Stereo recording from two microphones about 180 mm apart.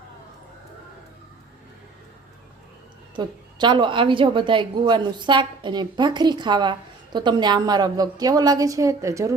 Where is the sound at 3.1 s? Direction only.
25° right (ahead or behind).